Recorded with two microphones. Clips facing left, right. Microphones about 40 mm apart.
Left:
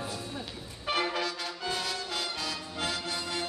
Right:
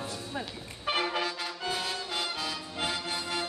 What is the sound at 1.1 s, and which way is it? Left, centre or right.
Music, centre.